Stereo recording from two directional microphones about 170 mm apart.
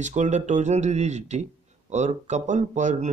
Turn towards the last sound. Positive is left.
turn(degrees=-45)  # may be behind; listen again after turning